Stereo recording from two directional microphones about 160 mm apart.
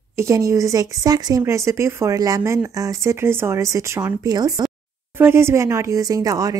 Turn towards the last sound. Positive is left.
turn(degrees=-20)  # may be behind; listen again after turning